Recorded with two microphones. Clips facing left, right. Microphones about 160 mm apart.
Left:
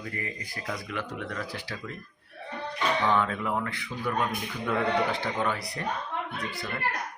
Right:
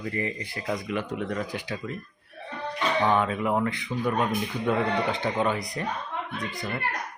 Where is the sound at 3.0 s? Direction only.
20° right (ahead or behind).